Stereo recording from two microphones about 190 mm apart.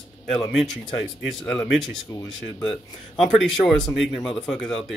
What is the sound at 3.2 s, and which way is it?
Speech, centre (ahead or behind).